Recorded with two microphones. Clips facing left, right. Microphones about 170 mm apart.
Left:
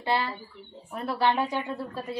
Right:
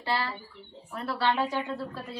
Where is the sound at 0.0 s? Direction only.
20° left (ahead or behind).